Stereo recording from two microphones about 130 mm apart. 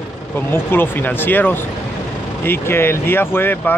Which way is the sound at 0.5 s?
15° left (ahead or behind).